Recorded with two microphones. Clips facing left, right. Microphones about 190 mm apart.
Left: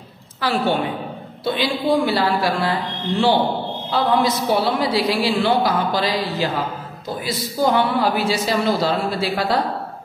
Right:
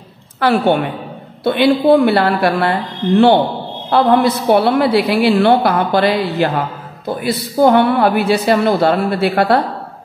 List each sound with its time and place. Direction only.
0.4 s a woman's voice: 60° right (ahead or behind)